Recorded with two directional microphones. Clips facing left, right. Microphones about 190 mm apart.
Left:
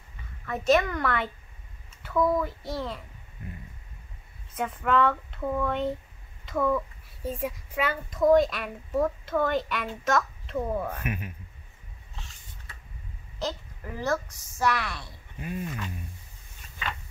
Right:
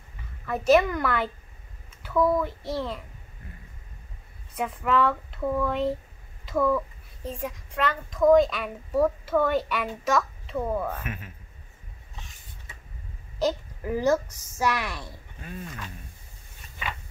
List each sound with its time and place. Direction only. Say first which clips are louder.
0.5 s a child's voice: right 3 dB; 5° right (ahead or behind)
4.6 s a child's voice: even; centre (ahead or behind)
6.4 s a sound: right 2 dB; centre (ahead or behind)
7.2 s a child's voice: left 2 dB; 5° left (ahead or behind)
10.9 s speech: left 1 dB; 15° left (ahead or behind)
13.9 s a woman's voice: right 6 dB; 15° right (ahead or behind)
15.4 s speech: left 5 dB; 10° left (ahead or behind)